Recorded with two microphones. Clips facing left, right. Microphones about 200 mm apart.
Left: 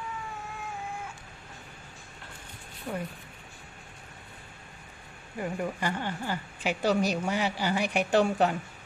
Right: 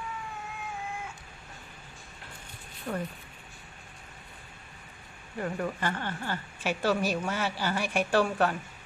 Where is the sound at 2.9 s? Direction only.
10° left (ahead or behind).